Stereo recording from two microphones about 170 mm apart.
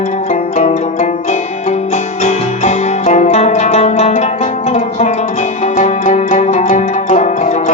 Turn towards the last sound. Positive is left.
turn(degrees=45)  # may be behind; listen again after turning